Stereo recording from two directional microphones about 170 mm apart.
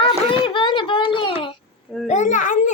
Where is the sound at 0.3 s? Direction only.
30° left (ahead or behind).